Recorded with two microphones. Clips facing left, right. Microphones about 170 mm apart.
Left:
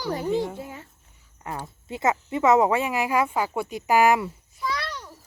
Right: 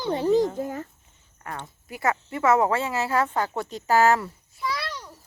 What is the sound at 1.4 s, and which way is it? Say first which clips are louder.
Speech: left 3 dB; 20° left (ahead or behind).